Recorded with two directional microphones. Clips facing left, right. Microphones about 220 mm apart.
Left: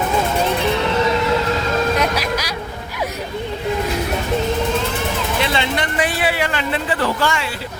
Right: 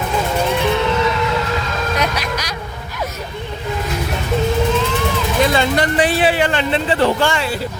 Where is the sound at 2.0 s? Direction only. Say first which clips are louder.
Left 1 dB; 5° left (ahead or behind).